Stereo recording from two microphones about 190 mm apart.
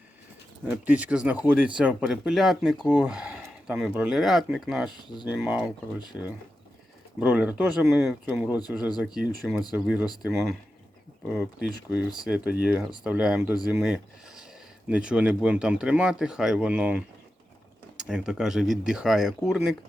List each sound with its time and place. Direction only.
0.7 s speech: 10° right (ahead or behind)
4.9 s speech: 25° left (ahead or behind)
5.3 s speech: 5° right (ahead or behind)
7.2 s speech: 5° right (ahead or behind)